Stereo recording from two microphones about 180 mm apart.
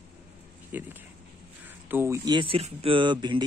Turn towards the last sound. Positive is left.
turn(degrees=-25)  # may be behind; listen again after turning